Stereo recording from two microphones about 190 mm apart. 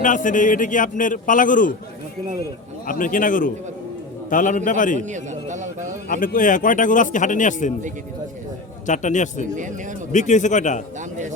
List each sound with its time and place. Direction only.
0.0 s a man's voice: 45° left (ahead or behind)
2.8 s a man's voice: 45° left (ahead or behind)
4.9 s a man's voice: 40° right (ahead or behind)
6.1 s a man's voice: 45° left (ahead or behind)
8.9 s a man's voice: 40° left (ahead or behind)